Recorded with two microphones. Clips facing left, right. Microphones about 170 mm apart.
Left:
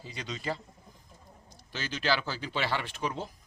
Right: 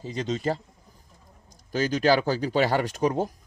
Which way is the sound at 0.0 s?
45° right (ahead or behind).